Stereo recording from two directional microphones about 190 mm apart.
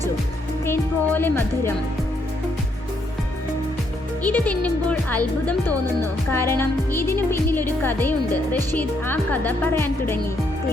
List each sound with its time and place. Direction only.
0.6 s speech: 10° left (ahead or behind)
4.2 s speech: 10° left (ahead or behind)